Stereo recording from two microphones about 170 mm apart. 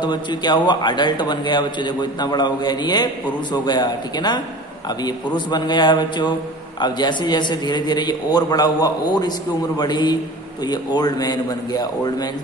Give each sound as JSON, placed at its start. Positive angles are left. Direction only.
{"t": 0.0, "sound": "a man's voice", "side_deg": 25}